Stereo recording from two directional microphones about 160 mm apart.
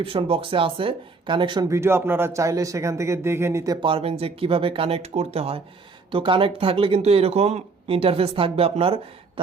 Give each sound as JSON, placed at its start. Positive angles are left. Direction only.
{"t": 0.0, "sound": "speech", "side_deg": -35}
{"t": 1.7, "sound": "speech", "side_deg": -15}